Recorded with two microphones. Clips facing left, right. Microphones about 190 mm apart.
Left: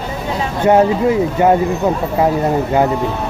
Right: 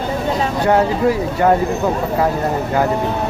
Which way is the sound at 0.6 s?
20° left (ahead or behind).